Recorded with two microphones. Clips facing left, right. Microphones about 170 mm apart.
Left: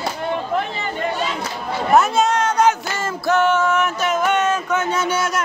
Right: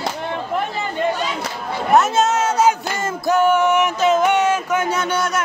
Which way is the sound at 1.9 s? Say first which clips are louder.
Even; centre (ahead or behind).